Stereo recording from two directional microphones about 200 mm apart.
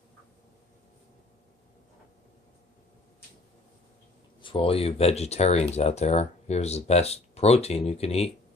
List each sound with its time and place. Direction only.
4.4 s speech: 25° left (ahead or behind)